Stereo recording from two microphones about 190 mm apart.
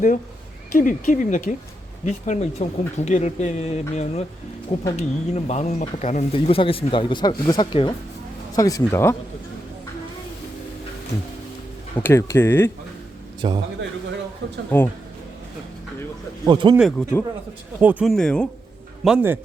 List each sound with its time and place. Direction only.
0.7 s speech: 45° left (ahead or behind); by 9.1 s 15° left (ahead or behind)
11.9 s speech: 15° left (ahead or behind)
13.4 s speech: 25° right (ahead or behind)
14.7 s speech: 10° left (ahead or behind)
16.5 s speech: 25° right (ahead or behind)
16.7 s speech: centre (ahead or behind)
17.7 s speech: 10° right (ahead or behind)
18.1 s speech: 5° left (ahead or behind)
19.0 s speech: 10° right (ahead or behind)